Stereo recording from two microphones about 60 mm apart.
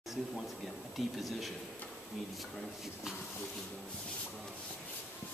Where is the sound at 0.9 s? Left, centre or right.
Centre.